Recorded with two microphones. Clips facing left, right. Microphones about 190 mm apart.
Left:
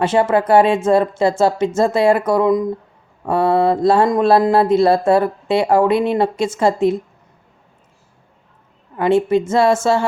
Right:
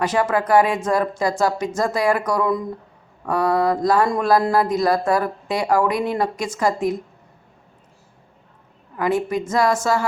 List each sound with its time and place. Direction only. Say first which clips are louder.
0.0 s speech: left 5 dB; 25° left (ahead or behind)
9.0 s a woman's voice: left 6 dB; 25° left (ahead or behind)